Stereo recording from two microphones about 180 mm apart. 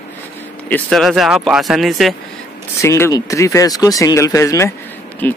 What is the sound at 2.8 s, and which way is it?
Speech, 15° left (ahead or behind).